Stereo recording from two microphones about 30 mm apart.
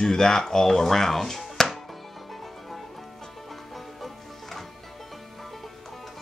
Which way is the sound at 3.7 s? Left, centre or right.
Centre.